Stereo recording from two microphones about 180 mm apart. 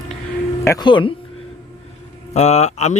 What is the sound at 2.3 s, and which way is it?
Speech, 40° left (ahead or behind).